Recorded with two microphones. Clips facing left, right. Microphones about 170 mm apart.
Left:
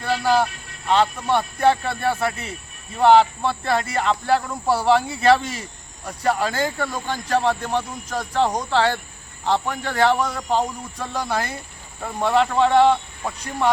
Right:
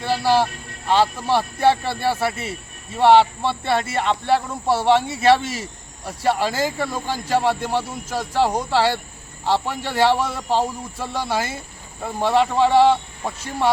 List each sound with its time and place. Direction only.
0.0 s speech: 5° right (ahead or behind)
1.7 s speech: 30° right (ahead or behind)
2.0 s speech: 5° right (ahead or behind)
10.2 s speech: 5° right (ahead or behind)